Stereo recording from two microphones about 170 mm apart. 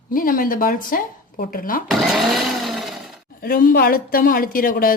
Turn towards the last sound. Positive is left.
turn(degrees=55)  # may be behind; listen again after turning